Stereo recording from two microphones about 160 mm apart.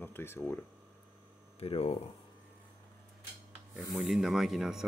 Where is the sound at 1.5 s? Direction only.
40° left (ahead or behind).